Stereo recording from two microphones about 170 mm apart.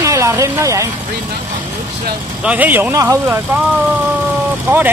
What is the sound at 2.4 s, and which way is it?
Speech, 10° right (ahead or behind).